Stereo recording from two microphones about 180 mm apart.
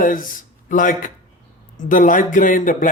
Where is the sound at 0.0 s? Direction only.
50° left (ahead or behind).